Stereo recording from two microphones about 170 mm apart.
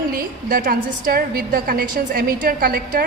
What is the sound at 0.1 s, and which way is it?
A woman's voice, 55° right (ahead or behind).